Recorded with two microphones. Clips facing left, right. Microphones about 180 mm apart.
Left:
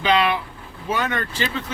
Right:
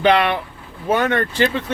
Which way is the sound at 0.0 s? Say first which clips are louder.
Right 4 dB; 60° right (ahead or behind).